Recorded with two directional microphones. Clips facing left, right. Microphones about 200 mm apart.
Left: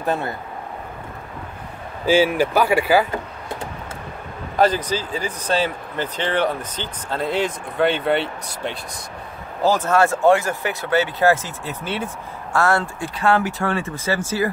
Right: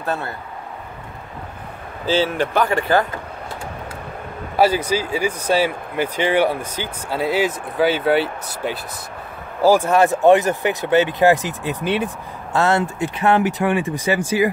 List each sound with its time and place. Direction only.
0.0 s speech: 15° left (ahead or behind)
2.0 s speech: 10° left (ahead or behind)
4.6 s speech: 10° right (ahead or behind)